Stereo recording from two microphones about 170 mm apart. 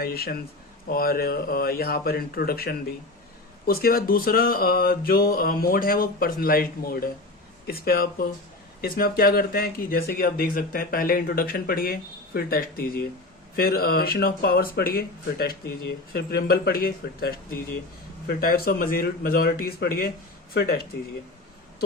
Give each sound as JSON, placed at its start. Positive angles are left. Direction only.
{"t": 0.0, "sound": "speech", "side_deg": 65}